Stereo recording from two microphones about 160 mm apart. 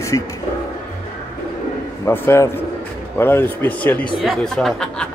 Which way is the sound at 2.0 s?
15° left (ahead or behind).